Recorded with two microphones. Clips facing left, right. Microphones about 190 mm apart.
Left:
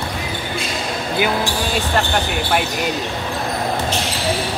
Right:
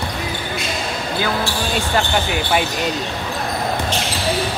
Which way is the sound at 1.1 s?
15° left (ahead or behind).